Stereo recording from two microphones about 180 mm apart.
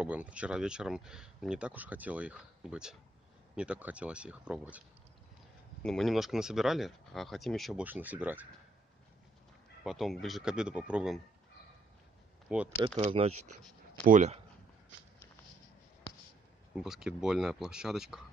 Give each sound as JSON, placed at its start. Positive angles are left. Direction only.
{"t": 0.0, "sound": "speech", "side_deg": -5}
{"t": 5.8, "sound": "speech", "side_deg": 5}
{"t": 9.8, "sound": "speech", "side_deg": 0}
{"t": 12.5, "sound": "speech", "side_deg": -5}
{"t": 13.0, "sound": "speech", "side_deg": -35}
{"t": 16.7, "sound": "speech", "side_deg": -5}